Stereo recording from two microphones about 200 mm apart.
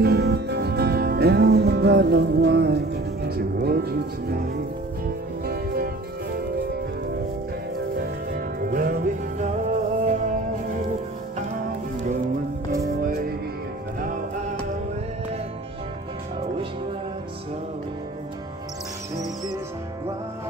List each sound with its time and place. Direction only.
0.0 s music: 55° right (ahead or behind)
8.0 s music: 50° right (ahead or behind)
13.0 s music: 45° right (ahead or behind)